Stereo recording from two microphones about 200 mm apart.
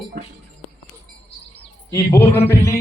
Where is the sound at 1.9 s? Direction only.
15° left (ahead or behind).